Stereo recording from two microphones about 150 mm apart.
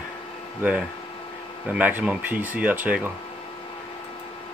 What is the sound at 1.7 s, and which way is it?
Speech, 10° right (ahead or behind).